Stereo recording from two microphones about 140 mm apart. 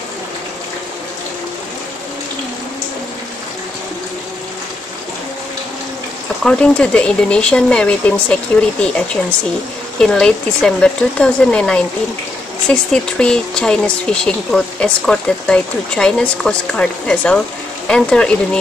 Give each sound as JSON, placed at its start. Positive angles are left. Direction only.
{"t": 6.4, "sound": "speech", "side_deg": 5}